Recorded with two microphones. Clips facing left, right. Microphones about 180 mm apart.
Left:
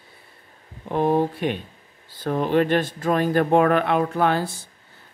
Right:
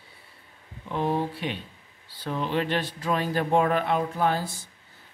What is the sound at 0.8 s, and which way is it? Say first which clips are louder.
Speech: left 6 dB; 50° left (ahead or behind).